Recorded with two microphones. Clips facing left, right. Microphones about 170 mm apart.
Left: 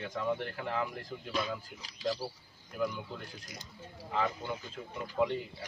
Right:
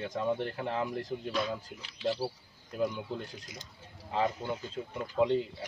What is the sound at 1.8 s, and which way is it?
Speech, 40° left (ahead or behind).